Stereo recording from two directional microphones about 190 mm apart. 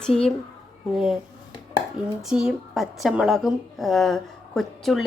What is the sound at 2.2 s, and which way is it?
A woman's voice, 5° right (ahead or behind).